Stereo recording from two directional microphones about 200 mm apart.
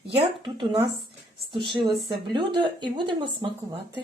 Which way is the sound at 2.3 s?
25° right (ahead or behind).